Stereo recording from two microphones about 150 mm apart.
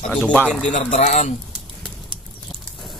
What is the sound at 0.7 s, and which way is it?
Speech, 55° left (ahead or behind).